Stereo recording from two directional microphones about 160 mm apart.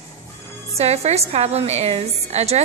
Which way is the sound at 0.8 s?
40° right (ahead or behind).